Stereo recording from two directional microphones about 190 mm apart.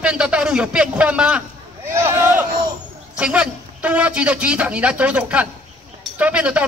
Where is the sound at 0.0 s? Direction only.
5° right (ahead or behind).